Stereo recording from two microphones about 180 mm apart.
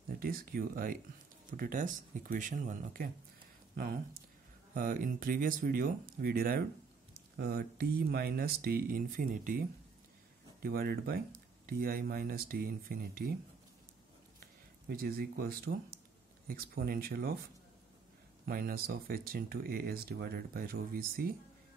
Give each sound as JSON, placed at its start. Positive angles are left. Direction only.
{"t": 0.2, "sound": "speech", "side_deg": -50}
{"t": 14.9, "sound": "speech", "side_deg": -60}
{"t": 18.4, "sound": "speech", "side_deg": -55}